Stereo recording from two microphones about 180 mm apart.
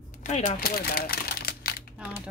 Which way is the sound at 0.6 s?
55° left (ahead or behind).